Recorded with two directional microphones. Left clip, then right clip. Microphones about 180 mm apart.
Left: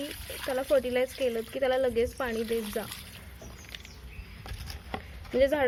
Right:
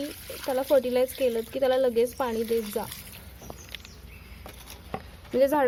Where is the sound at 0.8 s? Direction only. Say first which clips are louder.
Right 4 dB; 15° right (ahead or behind).